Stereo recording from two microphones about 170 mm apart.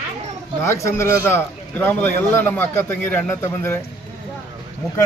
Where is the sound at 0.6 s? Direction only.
15° left (ahead or behind).